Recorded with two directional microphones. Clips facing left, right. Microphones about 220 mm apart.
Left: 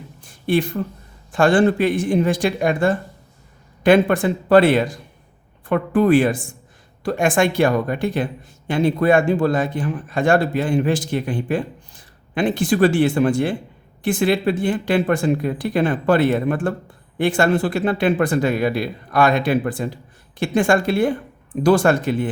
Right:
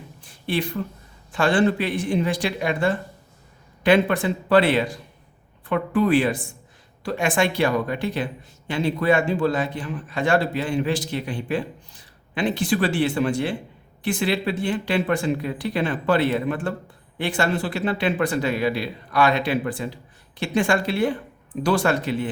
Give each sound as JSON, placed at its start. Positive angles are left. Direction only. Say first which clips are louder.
{"t": 0.4, "sound": "speech", "louder": "left 6 dB", "side_deg": 50}